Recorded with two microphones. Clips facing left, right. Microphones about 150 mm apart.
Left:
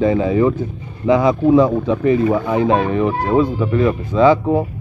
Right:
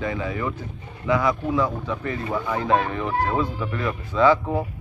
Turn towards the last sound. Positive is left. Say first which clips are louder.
# left 6 dB
turn(degrees=25)  # may be behind; listen again after turning